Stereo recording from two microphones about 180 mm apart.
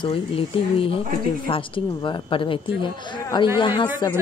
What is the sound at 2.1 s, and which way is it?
Speech, 30° left (ahead or behind).